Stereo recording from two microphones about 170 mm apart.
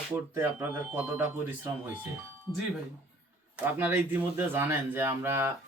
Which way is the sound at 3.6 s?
10° right (ahead or behind).